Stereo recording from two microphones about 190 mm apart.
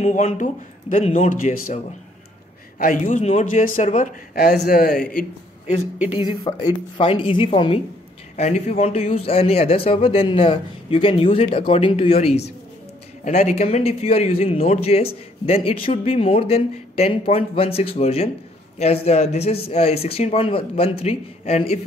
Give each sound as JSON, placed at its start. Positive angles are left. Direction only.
{"t": 0.0, "sound": "a man's voice", "side_deg": 40}
{"t": 2.8, "sound": "speech", "side_deg": 40}
{"t": 6.0, "sound": "a man's voice", "side_deg": 25}